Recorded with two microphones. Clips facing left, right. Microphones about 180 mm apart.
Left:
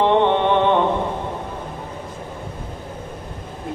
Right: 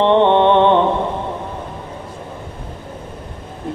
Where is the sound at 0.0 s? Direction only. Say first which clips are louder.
Right 4 dB; 60° right (ahead or behind).